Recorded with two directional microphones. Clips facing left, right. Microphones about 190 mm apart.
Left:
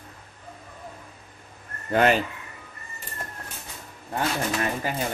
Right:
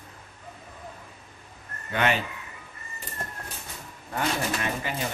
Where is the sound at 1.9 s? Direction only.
40° left (ahead or behind).